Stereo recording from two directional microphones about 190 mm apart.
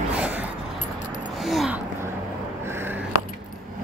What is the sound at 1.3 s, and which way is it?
Gasp, centre (ahead or behind).